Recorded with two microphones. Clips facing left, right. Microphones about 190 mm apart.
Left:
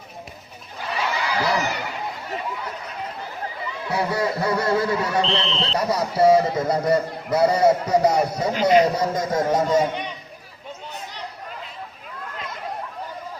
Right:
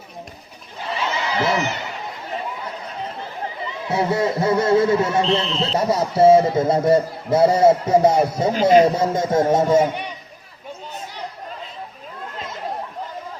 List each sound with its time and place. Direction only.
1.0 s a sound: 20° right (ahead or behind)
3.6 s a man's voice: 25° right (ahead or behind)
5.3 s a man's voice: 5° right (ahead or behind)
5.8 s a man's voice: 25° right (ahead or behind)